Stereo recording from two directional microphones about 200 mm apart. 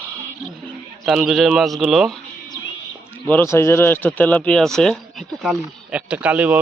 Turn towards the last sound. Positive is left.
turn(degrees=-5)  # may be behind; listen again after turning